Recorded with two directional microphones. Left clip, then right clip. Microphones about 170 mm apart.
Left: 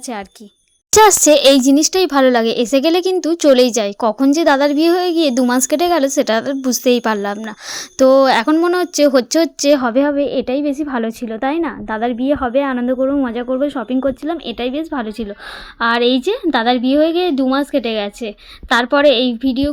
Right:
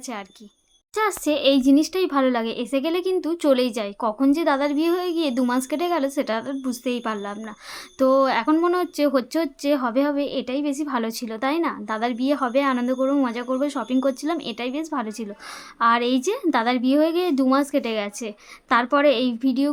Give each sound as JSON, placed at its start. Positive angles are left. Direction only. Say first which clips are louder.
{"t": 0.9, "sound": "a woman's voice", "louder": "left 14 dB", "side_deg": 40}